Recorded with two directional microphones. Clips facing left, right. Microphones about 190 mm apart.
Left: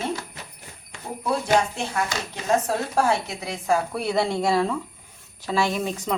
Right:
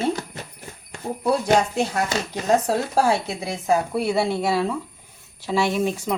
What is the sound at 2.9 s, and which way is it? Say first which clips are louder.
Speech: right 1 dB; 25° right (ahead or behind).